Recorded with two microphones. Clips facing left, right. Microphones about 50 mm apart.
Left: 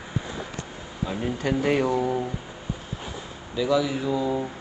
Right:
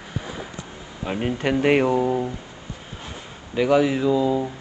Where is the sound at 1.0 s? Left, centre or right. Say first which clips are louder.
Right 3 dB; right.